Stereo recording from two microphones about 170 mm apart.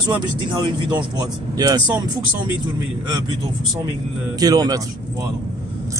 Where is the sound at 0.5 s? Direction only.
25° right (ahead or behind).